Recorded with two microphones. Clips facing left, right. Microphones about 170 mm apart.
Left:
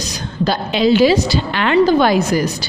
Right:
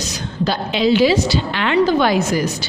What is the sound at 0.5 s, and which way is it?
A woman's voice, 45° left (ahead or behind).